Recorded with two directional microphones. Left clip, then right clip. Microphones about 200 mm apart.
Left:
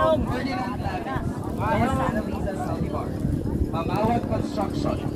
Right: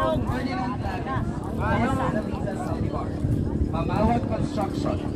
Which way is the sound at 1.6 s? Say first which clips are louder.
Left 1 dB; 55° left (ahead or behind).